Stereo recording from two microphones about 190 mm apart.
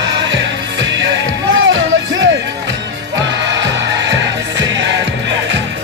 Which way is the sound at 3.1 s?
70° right (ahead or behind).